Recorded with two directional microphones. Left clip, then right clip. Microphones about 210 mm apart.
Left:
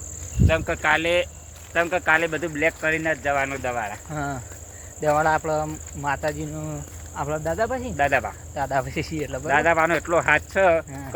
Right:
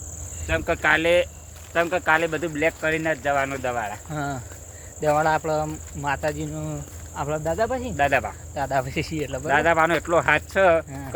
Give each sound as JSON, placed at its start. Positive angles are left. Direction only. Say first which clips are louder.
{"t": 0.6, "sound": "speech", "louder": "right 5 dB", "side_deg": -55}
{"t": 1.7, "sound": "speech", "louder": "even", "side_deg": -15}
{"t": 4.1, "sound": "speech", "louder": "even", "side_deg": 5}
{"t": 9.5, "sound": "speech", "louder": "even", "side_deg": -15}